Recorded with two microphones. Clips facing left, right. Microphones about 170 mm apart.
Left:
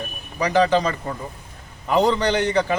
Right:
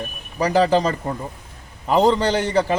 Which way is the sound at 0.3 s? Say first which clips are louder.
Right 1 dB; 35° right (ahead or behind).